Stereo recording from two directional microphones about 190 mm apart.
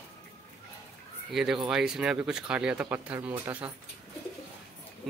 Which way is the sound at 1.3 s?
Centre (ahead or behind).